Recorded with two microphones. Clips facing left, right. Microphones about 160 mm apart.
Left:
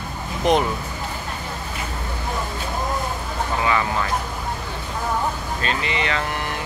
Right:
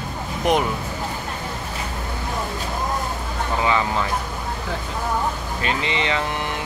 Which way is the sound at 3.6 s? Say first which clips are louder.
Right 1 dB; 20° right (ahead or behind).